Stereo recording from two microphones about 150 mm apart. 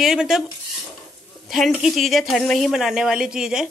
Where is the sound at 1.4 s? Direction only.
Centre (ahead or behind).